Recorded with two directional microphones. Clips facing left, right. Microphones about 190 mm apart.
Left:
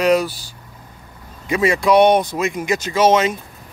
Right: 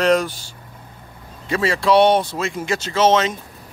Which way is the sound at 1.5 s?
15° left (ahead or behind).